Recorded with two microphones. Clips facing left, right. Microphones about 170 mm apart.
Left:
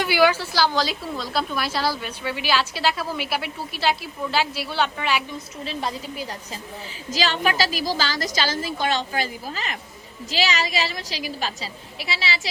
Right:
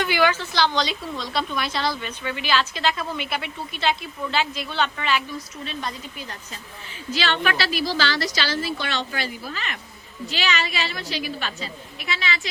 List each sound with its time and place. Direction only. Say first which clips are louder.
0.0 s a woman's voice: left 2 dB; 10° left (ahead or behind)
5.6 s a woman's voice: left 6 dB; 30° left (ahead or behind)